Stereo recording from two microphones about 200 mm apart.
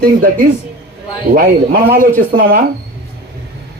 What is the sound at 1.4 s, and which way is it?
Speech, 50° right (ahead or behind).